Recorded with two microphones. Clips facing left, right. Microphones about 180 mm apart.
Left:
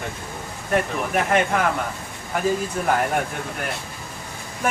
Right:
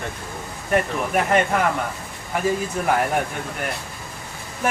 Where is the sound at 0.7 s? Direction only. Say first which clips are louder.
Right 1 dB; centre (ahead or behind).